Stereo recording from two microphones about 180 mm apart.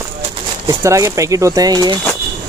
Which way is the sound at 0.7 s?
15° right (ahead or behind).